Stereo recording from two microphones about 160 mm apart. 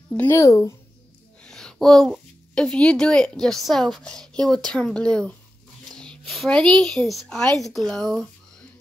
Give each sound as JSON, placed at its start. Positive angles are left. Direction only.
{"t": 0.3, "sound": "speech", "side_deg": 20}
{"t": 1.4, "sound": "a woman's voice", "side_deg": 5}